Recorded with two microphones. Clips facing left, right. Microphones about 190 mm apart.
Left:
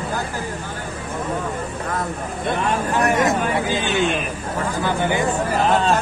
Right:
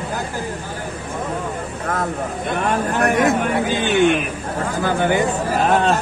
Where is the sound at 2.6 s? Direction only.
55° right (ahead or behind).